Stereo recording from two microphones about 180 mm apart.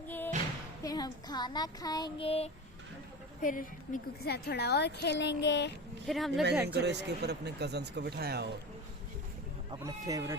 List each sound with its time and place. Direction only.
0.8 s child singing: 20° left (ahead or behind)
3.4 s a woman's voice: 50° left (ahead or behind); by 5.7 s 75° left (ahead or behind)
6.1 s speech: centre (ahead or behind)
6.7 s speech: 70° right (ahead or behind)
9.8 s speech: 20° right (ahead or behind)